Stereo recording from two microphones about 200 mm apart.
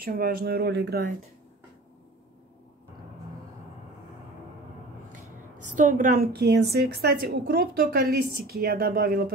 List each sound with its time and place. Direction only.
0.0 s a woman's voice: 45° right (ahead or behind)
5.8 s a woman's voice: 40° right (ahead or behind)